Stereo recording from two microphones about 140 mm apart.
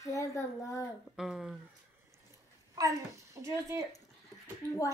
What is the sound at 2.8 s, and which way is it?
A child's voice, 25° right (ahead or behind).